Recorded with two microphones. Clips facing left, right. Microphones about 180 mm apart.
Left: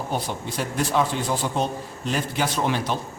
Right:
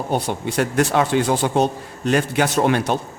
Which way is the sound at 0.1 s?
70° right (ahead or behind).